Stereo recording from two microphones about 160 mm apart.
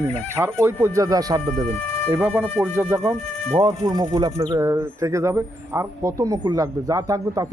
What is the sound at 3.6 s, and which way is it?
Speech, 25° right (ahead or behind).